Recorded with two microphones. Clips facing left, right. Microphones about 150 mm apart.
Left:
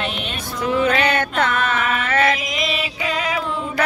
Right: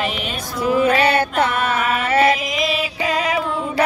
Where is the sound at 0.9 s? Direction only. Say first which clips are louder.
Right 3 dB; 35° right (ahead or behind).